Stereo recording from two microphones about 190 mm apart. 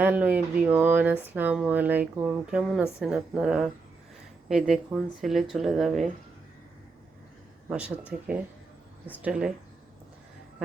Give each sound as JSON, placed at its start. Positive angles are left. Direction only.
{"t": 0.0, "sound": "speech", "side_deg": -10}
{"t": 4.7, "sound": "speech", "side_deg": 0}
{"t": 7.7, "sound": "speech", "side_deg": -5}